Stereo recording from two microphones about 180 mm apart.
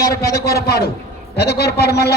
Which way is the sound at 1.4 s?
60° left (ahead or behind).